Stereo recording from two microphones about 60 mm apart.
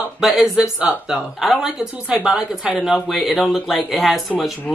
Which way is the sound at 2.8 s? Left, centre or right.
Centre.